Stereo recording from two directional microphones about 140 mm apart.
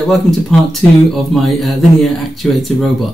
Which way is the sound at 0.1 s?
Centre (ahead or behind).